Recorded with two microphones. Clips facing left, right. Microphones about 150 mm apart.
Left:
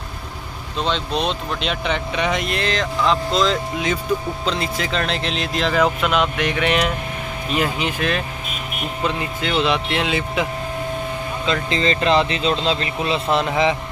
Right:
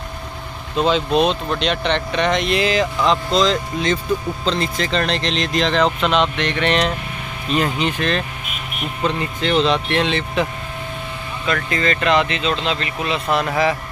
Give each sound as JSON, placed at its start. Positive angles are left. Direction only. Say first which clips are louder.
{"t": 0.7, "sound": "speech", "louder": "right 6 dB", "side_deg": -5}
{"t": 9.2, "sound": "speech", "louder": "right 5 dB", "side_deg": 10}
{"t": 11.4, "sound": "speech", "louder": "even", "side_deg": 25}